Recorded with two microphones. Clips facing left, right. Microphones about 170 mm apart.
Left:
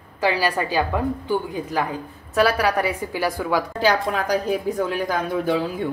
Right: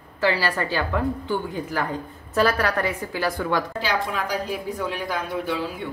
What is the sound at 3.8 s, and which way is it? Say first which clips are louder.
Speech: left 5 dB; 40° left (ahead or behind).